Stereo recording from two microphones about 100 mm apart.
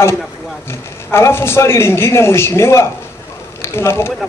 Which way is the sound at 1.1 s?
25° left (ahead or behind).